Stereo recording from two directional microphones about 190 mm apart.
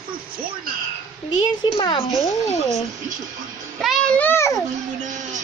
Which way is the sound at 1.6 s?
25° left (ahead or behind).